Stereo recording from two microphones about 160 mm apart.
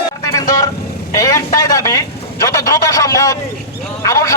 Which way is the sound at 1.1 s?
20° left (ahead or behind).